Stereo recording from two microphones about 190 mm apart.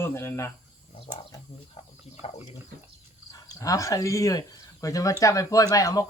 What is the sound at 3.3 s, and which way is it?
Speech, 20° left (ahead or behind).